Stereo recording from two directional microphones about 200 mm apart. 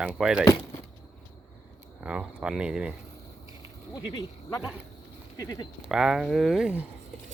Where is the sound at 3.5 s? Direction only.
25° left (ahead or behind).